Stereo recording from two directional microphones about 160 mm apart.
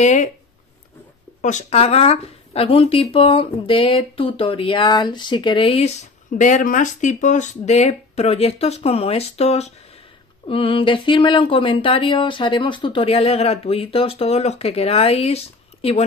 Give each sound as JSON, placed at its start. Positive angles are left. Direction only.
{"t": 0.0, "sound": "speech", "side_deg": 50}
{"t": 1.4, "sound": "speech", "side_deg": 50}